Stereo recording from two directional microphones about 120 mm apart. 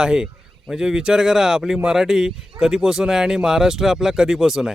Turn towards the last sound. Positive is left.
turn(degrees=-5)  # may be behind; listen again after turning